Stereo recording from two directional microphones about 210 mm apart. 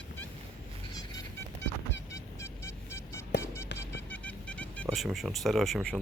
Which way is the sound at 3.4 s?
15° left (ahead or behind).